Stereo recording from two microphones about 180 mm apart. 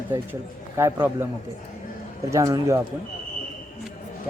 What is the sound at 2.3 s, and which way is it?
Speech, 15° right (ahead or behind).